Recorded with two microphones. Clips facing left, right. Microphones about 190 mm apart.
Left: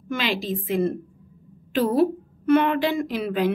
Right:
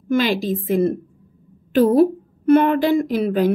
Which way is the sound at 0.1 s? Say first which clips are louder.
Right 7 dB; 45° right (ahead or behind).